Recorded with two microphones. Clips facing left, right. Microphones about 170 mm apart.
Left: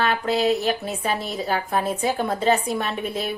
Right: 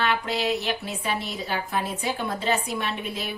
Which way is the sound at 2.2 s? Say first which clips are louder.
Left 5 dB; 45° left (ahead or behind).